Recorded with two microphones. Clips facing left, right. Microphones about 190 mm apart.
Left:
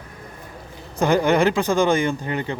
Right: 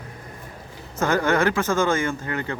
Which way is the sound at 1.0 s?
15° left (ahead or behind).